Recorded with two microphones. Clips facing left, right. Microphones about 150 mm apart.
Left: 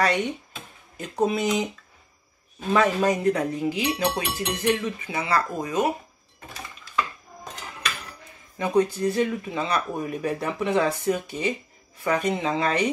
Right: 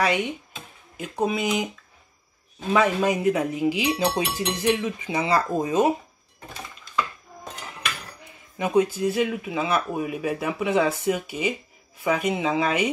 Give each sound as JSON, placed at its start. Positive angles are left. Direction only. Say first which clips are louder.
{"t": 0.0, "sound": "a man's voice", "louder": "even", "side_deg": -5}
{"t": 2.7, "sound": "a man's voice", "louder": "even", "side_deg": 0}
{"t": 8.5, "sound": "speech", "louder": "right 1 dB", "side_deg": -10}